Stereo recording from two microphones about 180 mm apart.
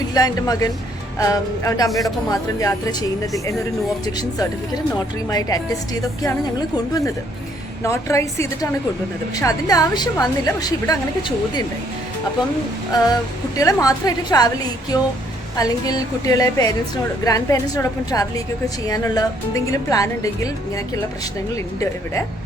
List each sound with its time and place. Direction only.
0.1 s a woman's voice: 20° left (ahead or behind)
1.9 s speech: centre (ahead or behind)
2.3 s a woman's voice: 20° left (ahead or behind)
4.2 s a woman's voice: 20° left (ahead or behind)
7.9 s a woman's voice: 15° left (ahead or behind)
13.6 s a woman's voice: 20° left (ahead or behind)